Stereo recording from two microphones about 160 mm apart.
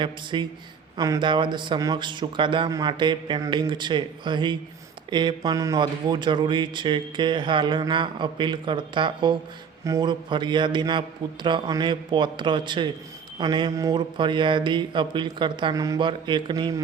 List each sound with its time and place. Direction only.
0.0 s speech: 30° right (ahead or behind)